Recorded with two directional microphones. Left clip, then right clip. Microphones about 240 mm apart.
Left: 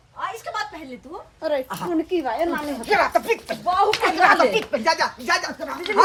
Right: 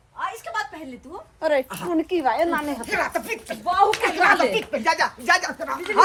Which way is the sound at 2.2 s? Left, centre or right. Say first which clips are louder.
Right 2 dB; centre.